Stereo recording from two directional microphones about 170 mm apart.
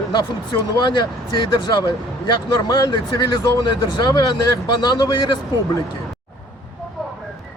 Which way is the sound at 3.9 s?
25° left (ahead or behind).